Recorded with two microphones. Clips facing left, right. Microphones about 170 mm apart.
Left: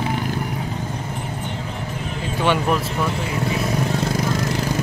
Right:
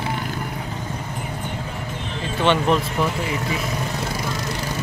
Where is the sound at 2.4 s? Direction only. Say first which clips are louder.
Right 1 dB; 10° left (ahead or behind).